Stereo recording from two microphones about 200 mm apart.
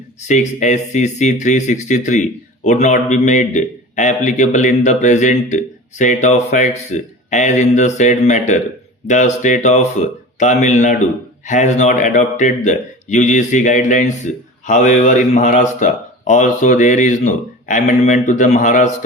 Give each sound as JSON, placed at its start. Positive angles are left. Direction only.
{"t": 0.3, "sound": "a man's voice", "side_deg": 35}